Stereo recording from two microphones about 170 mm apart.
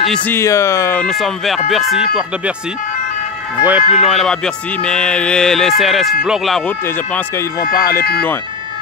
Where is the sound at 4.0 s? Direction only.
Centre (ahead or behind).